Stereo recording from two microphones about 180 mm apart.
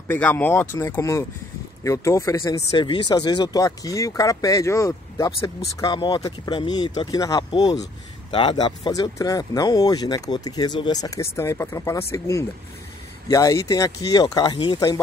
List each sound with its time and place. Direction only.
0.1 s speech: 10° left (ahead or behind); by 15.0 s 25° left (ahead or behind)